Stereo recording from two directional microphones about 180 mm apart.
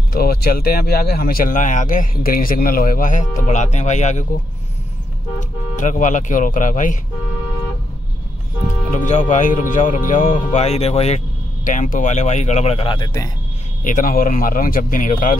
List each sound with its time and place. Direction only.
0.1 s speech: 55° left (ahead or behind); by 4.3 s 40° left (ahead or behind)
5.8 s speech: 45° left (ahead or behind)
8.9 s speech: 45° left (ahead or behind); by 13.3 s 20° left (ahead or behind)
13.8 s speech: 50° left (ahead or behind)